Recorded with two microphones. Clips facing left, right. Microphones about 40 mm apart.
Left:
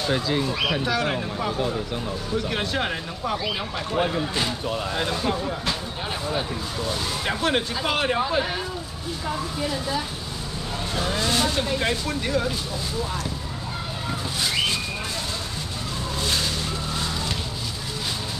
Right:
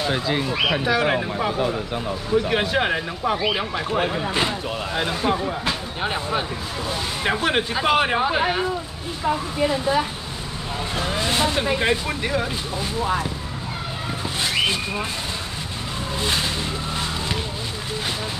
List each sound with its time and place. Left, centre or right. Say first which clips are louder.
0.0 s speech: right 1 dB; centre
11.1 s speech: right 2 dB; right
16.2 s speech: right 2 dB; right